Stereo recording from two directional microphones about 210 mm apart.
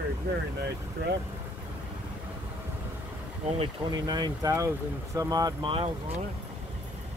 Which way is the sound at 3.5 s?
20° right (ahead or behind).